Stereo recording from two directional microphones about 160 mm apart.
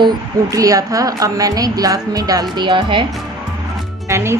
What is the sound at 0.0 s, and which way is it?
A woman's voice, 20° right (ahead or behind).